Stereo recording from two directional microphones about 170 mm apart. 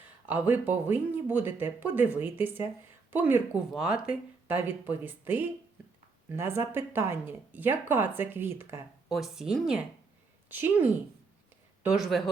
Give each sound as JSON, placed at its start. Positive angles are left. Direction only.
{"t": 0.3, "sound": "speech", "side_deg": -10}
{"t": 9.0, "sound": "speech", "side_deg": 0}